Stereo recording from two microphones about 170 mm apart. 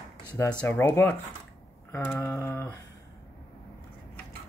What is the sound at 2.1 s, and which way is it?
Speech, 20° left (ahead or behind).